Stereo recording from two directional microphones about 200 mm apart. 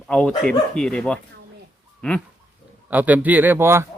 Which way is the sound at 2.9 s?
10° right (ahead or behind).